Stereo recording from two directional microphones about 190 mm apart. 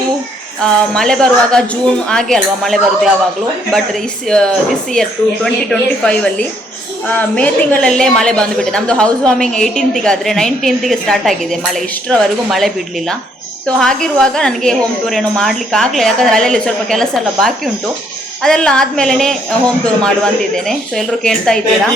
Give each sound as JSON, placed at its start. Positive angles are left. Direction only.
{"t": 0.6, "sound": "a woman's voice", "side_deg": 5}